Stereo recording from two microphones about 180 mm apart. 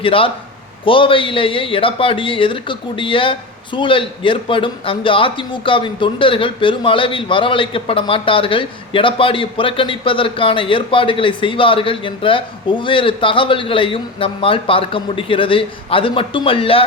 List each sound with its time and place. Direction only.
0.0 s speech: 30° left (ahead or behind)